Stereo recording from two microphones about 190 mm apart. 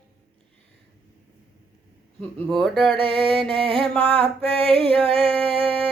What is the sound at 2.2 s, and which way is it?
Speech, 5° left (ahead or behind).